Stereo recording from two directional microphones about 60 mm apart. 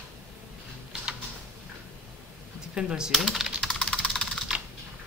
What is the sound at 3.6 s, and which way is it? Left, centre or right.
Typing, centre.